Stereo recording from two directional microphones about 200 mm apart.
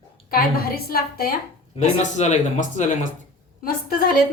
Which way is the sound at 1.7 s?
35° left (ahead or behind).